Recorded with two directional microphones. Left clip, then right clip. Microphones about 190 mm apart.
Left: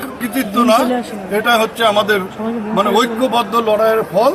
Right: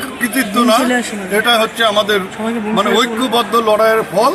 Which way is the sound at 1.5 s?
25° left (ahead or behind).